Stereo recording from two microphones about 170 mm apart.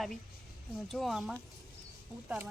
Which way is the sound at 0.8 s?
Centre (ahead or behind).